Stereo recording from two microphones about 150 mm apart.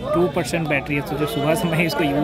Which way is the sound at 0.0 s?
Centre (ahead or behind).